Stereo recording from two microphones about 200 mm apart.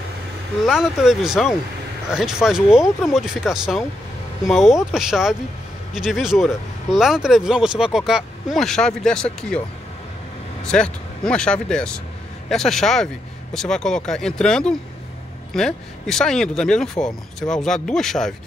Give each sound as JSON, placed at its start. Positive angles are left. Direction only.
{"t": 0.7, "sound": "speech", "side_deg": 0}
{"t": 10.6, "sound": "speech", "side_deg": 5}